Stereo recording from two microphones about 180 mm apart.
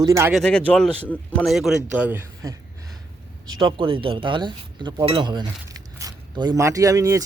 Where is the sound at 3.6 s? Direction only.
25° right (ahead or behind).